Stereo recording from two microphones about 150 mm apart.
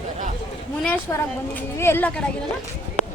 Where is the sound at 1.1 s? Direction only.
15° left (ahead or behind).